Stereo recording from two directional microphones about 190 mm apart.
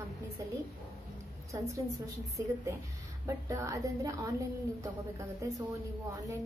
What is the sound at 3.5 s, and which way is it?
Speech, 15° right (ahead or behind).